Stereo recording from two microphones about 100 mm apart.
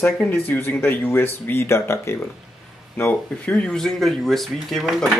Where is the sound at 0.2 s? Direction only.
20° left (ahead or behind).